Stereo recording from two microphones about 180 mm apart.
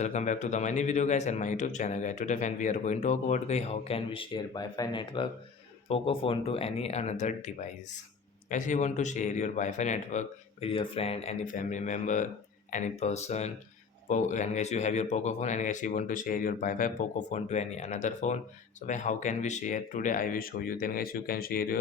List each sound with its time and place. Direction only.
0.0 s speech: 40° left (ahead or behind); by 21.8 s 55° left (ahead or behind)